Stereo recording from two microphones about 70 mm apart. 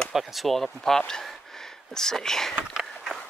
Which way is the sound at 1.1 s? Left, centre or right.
Centre.